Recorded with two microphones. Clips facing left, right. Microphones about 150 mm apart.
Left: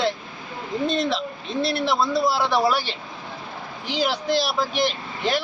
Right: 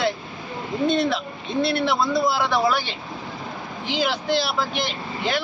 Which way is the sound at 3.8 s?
40° left (ahead or behind).